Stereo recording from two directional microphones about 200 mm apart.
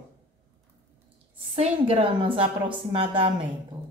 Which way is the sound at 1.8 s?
25° right (ahead or behind).